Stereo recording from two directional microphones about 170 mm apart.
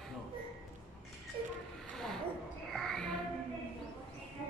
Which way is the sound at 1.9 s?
5° left (ahead or behind).